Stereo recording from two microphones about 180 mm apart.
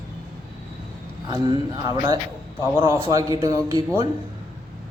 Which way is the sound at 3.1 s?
20° right (ahead or behind).